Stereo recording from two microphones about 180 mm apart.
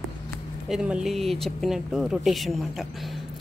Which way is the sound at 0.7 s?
5° right (ahead or behind).